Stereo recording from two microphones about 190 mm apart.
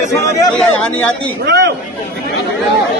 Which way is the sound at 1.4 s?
65° right (ahead or behind).